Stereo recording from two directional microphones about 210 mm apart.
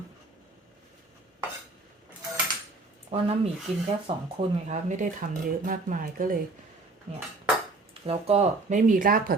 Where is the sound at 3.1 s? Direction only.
30° right (ahead or behind).